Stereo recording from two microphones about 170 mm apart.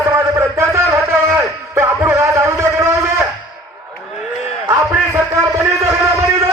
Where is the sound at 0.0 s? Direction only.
15° right (ahead or behind).